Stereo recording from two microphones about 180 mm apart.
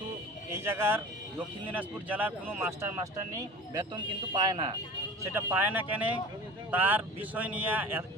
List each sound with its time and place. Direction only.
0.5 s speech: 15° right (ahead or behind)